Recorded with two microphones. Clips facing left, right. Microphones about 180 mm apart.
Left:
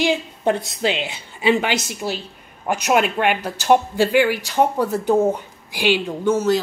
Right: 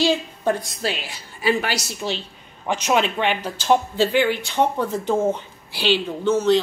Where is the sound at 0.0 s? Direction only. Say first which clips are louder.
Left 1 dB; 15° left (ahead or behind).